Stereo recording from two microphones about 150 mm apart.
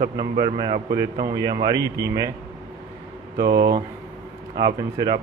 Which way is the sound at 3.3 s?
90° right.